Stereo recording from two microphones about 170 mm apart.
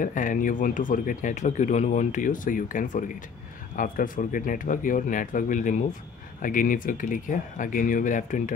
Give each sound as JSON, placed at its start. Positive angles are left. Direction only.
{"t": 0.0, "sound": "speech", "side_deg": 50}